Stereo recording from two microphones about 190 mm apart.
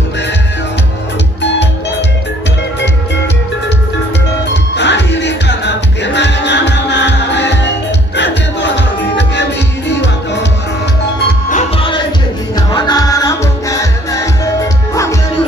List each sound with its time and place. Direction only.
4.7 s music: 65° left (ahead or behind)
11.5 s music: 30° left (ahead or behind)